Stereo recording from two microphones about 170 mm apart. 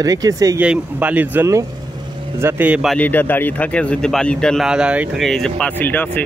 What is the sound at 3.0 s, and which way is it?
Speech, 10° left (ahead or behind).